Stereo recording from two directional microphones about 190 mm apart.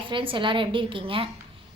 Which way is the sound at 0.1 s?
25° right (ahead or behind).